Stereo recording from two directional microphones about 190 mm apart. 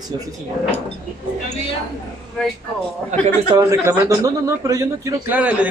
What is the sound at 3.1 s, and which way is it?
Speech, 40° right (ahead or behind).